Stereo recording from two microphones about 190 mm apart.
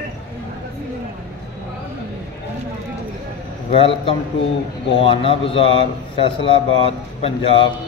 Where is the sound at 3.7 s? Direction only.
30° left (ahead or behind).